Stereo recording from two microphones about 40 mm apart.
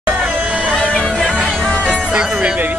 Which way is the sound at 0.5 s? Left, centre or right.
Right.